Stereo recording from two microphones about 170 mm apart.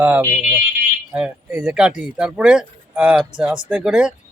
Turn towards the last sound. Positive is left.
turn(degrees=-5)  # may be behind; listen again after turning